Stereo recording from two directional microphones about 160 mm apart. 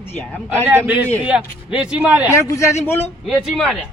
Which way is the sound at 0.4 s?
10° right (ahead or behind).